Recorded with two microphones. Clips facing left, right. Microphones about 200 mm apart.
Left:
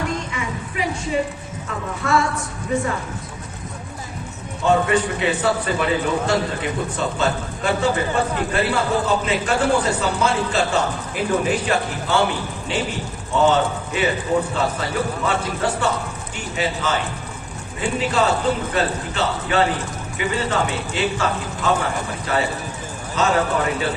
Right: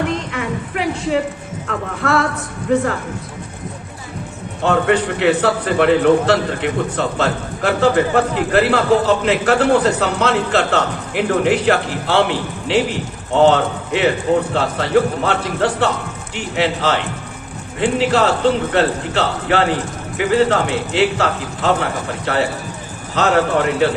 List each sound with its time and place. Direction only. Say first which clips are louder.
0.3 s music: right 5 dB; 60° right (ahead or behind)
1.6 s a man's voice: right 5 dB; 65° right (ahead or behind)
4.6 s a man's voice: right 2 dB; 70° right (ahead or behind)